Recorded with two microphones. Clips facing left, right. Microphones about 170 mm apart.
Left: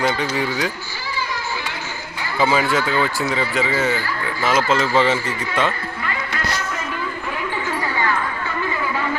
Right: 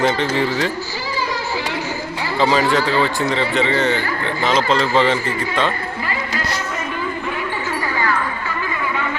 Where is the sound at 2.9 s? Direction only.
20° right (ahead or behind).